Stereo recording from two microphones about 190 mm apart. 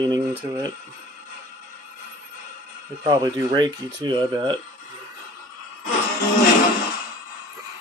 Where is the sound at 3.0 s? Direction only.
20° right (ahead or behind).